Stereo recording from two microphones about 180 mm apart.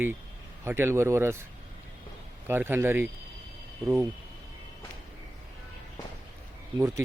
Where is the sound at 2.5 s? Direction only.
10° right (ahead or behind).